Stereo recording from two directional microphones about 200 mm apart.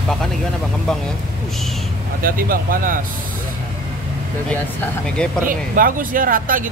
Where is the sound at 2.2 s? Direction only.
45° right (ahead or behind).